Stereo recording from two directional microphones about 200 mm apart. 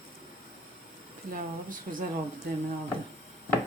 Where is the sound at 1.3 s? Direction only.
45° right (ahead or behind).